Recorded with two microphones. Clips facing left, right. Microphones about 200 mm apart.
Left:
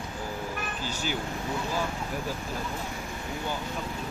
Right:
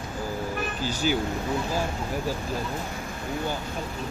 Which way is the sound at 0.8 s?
35° right (ahead or behind).